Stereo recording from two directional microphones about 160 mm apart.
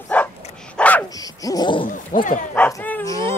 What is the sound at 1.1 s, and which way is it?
Dog, 20° left (ahead or behind).